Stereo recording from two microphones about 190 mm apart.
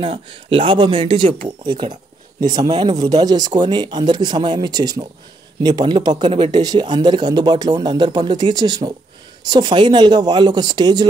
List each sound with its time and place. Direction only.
0.0 s speech: 25° right (ahead or behind)